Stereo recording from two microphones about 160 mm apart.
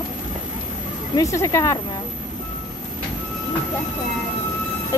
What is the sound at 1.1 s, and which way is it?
Speech, 20° left (ahead or behind).